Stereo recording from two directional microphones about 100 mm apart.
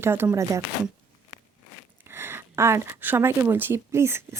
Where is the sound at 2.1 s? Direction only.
25° right (ahead or behind).